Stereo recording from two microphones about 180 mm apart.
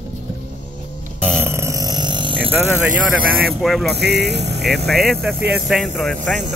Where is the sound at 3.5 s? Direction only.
Centre (ahead or behind).